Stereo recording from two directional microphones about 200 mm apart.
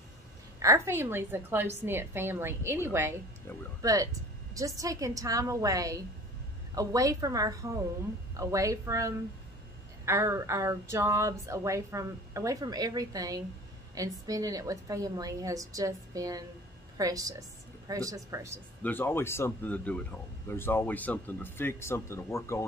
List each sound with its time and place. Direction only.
0.6 s a woman's voice: 15° right (ahead or behind)
18.8 s speech: 10° left (ahead or behind)